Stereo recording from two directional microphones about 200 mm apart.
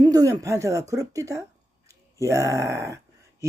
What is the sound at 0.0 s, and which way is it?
Speech, 20° right (ahead or behind).